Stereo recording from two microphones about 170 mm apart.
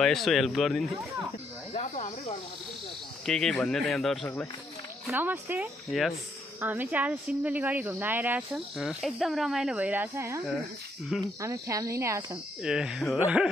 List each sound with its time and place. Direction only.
0.0 s speech: centre (ahead or behind)
1.7 s speech: 40° left (ahead or behind)
3.3 s speech: 5° left (ahead or behind)
5.0 s speech: 10° right (ahead or behind)
5.9 s speech: centre (ahead or behind)
6.6 s speech: 10° right (ahead or behind)
8.7 s speech: centre (ahead or behind)
11.1 s speech: centre (ahead or behind)
11.4 s speech: 20° right (ahead or behind)
12.6 s speech: 5° right (ahead or behind)